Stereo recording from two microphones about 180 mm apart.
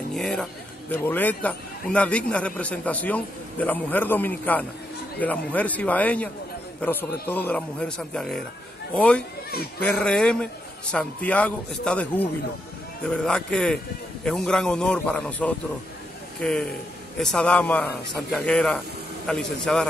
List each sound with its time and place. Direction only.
0.1 s a man's voice: 5° left (ahead or behind)